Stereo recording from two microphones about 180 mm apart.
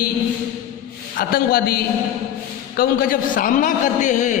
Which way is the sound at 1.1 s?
55° left (ahead or behind).